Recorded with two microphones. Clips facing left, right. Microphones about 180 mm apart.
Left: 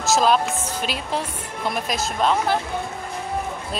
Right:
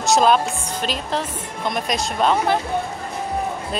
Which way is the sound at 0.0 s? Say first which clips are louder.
Right 2 dB; centre (ahead or behind).